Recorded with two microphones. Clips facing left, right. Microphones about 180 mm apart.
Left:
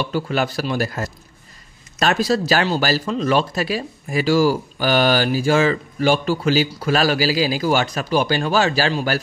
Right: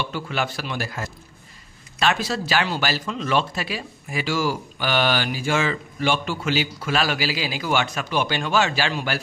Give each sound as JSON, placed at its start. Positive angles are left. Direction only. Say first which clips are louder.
{"t": 0.0, "sound": "speech", "louder": "left 5 dB", "side_deg": 40}